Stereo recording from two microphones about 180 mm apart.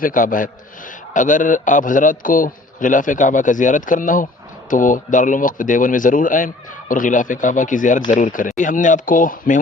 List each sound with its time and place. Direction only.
0.0 s a man's voice: 50° left (ahead or behind)